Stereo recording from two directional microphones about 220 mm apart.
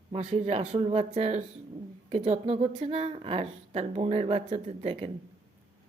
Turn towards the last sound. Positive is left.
turn(degrees=-25)  # may be behind; listen again after turning